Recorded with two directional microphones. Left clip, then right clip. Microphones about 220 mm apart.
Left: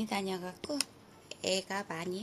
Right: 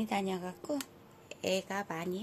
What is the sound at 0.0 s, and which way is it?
A woman's voice, 15° right (ahead or behind).